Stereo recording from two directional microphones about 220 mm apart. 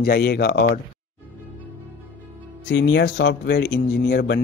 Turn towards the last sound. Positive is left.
turn(degrees=45)  # may be behind; listen again after turning